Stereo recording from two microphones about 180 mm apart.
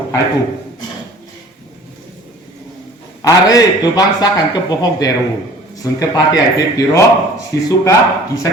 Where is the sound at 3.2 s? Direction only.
20° left (ahead or behind).